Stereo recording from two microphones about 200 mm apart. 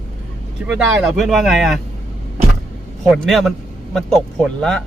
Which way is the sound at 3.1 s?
Centre (ahead or behind).